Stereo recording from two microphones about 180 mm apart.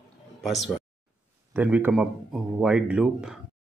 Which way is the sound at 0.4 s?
Centre (ahead or behind).